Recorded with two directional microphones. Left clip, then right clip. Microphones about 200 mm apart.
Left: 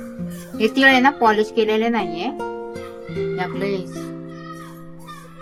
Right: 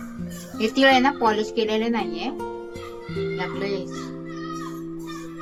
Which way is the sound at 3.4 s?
15° left (ahead or behind).